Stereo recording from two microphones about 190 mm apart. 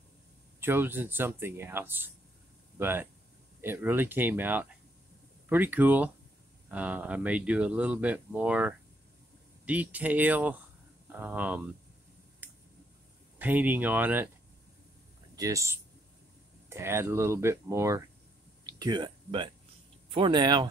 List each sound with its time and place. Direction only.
0.6 s speech: 10° right (ahead or behind)
12.4 s a sound: 10° right (ahead or behind)
13.4 s speech: 10° right (ahead or behind)
15.3 s speech: 15° right (ahead or behind)
18.6 s a sound: 20° right (ahead or behind)
20.1 s speech: 25° right (ahead or behind)